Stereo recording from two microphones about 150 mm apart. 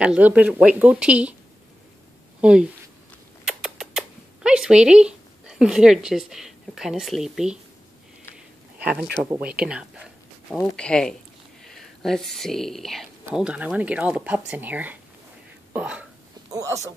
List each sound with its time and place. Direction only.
0.0 s speech: 5° right (ahead or behind)
3.4 s rodents: 5° right (ahead or behind)
8.7 s speech: 10° right (ahead or behind)
10.5 s speech: 5° left (ahead or behind)
16.5 s speech: 20° right (ahead or behind)